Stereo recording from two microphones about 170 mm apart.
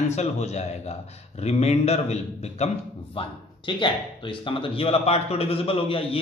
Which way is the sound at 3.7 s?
30° left (ahead or behind).